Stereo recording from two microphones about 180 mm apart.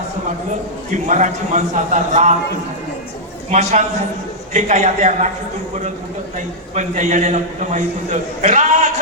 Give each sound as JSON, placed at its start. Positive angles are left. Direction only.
{"t": 0.9, "sound": "a man's voice", "side_deg": -40}
{"t": 3.5, "sound": "a man's voice", "side_deg": -40}
{"t": 6.7, "sound": "a man's voice", "side_deg": -40}